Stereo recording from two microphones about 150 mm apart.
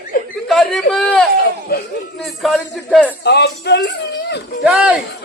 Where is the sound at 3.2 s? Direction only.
90° left.